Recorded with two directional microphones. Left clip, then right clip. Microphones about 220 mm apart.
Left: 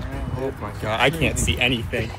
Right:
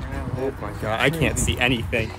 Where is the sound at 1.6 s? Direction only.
25° right (ahead or behind).